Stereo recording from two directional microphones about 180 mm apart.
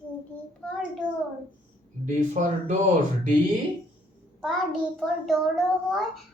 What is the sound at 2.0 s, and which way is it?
Speech, 40° right (ahead or behind).